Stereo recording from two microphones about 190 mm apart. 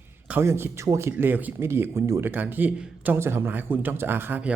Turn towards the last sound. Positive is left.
turn(degrees=-10)  # may be behind; listen again after turning